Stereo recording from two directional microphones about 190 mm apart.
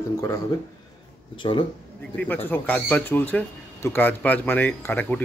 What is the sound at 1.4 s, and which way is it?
Speech, 25° left (ahead or behind).